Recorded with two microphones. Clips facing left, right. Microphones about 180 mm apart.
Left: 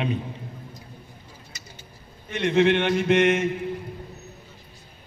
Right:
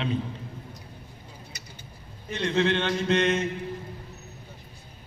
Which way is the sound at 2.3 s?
20° left (ahead or behind).